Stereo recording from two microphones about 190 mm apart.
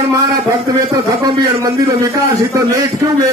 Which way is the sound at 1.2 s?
15° right (ahead or behind).